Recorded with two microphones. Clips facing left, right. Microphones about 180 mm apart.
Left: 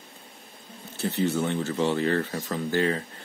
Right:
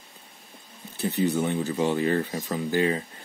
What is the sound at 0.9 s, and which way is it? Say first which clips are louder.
Speech: right 1 dB; 15° right (ahead or behind).